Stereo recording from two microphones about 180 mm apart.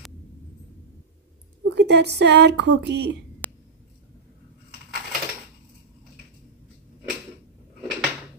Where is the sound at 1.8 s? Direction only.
70° right (ahead or behind).